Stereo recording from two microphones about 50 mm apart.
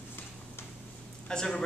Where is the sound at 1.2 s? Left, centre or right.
Centre.